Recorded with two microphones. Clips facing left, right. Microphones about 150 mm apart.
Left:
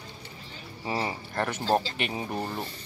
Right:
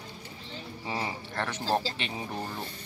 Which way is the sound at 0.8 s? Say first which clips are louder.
Left 4 dB; 5° left (ahead or behind).